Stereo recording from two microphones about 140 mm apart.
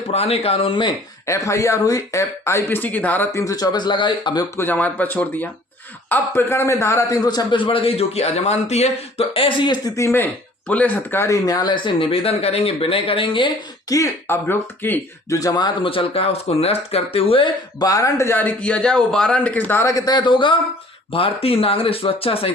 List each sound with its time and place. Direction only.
0.1 s speech: 45° left (ahead or behind)
1.3 s speech: 20° left (ahead or behind)
4.5 s a man's voice: 15° left (ahead or behind); by 13.5 s 40° left (ahead or behind)
13.9 s speech: 20° left (ahead or behind)
15.4 s speech: 25° left (ahead or behind); by 22.5 s 45° left (ahead or behind)